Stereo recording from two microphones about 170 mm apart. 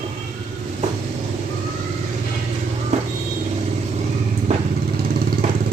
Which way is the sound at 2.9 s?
45° right (ahead or behind).